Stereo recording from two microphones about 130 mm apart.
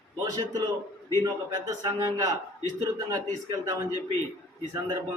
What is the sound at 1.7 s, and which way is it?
A man's voice, 25° right (ahead or behind).